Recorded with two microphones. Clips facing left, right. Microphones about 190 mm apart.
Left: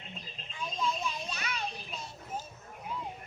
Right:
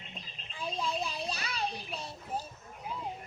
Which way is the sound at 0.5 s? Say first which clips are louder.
Even; 35° right (ahead or behind).